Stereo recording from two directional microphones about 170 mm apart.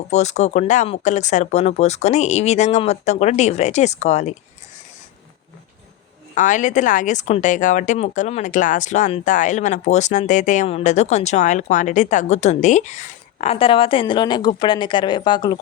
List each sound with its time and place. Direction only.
0.1 s speech: 40° left (ahead or behind)
6.3 s a woman's voice: 50° left (ahead or behind); by 15.5 s 25° left (ahead or behind)